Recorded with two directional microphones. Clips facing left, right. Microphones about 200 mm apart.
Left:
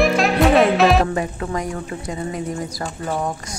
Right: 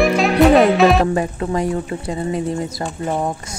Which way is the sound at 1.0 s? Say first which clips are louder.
Right 4 dB; 30° right (ahead or behind).